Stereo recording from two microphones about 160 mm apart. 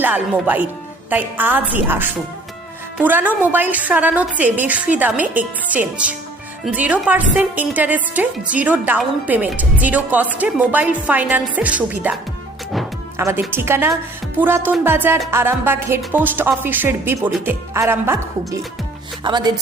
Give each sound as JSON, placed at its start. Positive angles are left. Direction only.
{"t": 0.0, "sound": "a woman's voice", "side_deg": -10}
{"t": 13.1, "sound": "a woman's voice", "side_deg": -15}
{"t": 19.2, "sound": "speech", "side_deg": -25}